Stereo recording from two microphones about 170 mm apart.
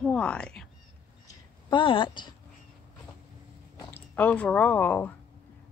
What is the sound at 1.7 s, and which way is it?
Speech, 30° left (ahead or behind).